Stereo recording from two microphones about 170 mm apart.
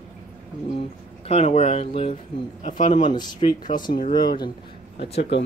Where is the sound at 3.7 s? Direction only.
25° left (ahead or behind).